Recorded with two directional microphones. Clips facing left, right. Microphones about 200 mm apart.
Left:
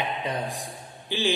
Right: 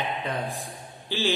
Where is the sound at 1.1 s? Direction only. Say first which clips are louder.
Even; 15° left (ahead or behind).